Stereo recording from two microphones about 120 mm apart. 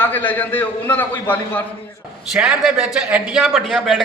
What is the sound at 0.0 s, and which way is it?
A man's voice, 15° left (ahead or behind).